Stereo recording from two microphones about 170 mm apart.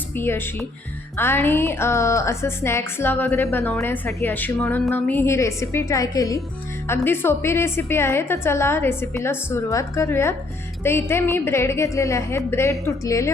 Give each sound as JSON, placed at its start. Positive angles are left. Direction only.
{"t": 0.2, "sound": "a woman's voice", "side_deg": 15}